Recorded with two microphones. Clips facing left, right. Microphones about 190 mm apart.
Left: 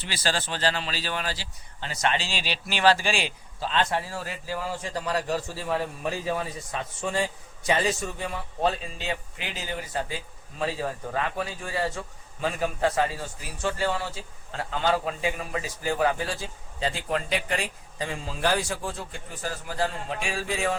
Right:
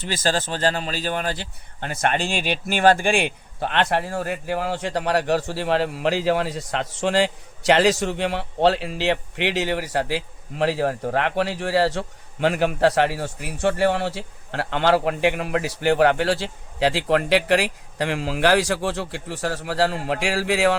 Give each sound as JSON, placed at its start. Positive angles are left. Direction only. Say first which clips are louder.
{"t": 0.0, "sound": "a man's voice", "louder": "right 6 dB", "side_deg": -45}